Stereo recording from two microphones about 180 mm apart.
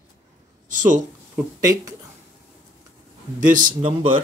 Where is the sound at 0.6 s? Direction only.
45° right (ahead or behind).